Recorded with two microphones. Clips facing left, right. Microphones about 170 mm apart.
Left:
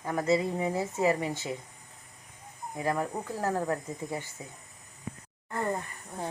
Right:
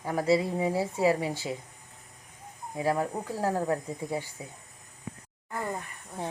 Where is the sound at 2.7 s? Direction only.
10° right (ahead or behind).